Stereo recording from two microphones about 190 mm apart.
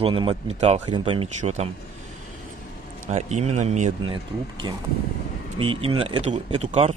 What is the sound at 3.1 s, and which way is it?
Speech, 35° right (ahead or behind).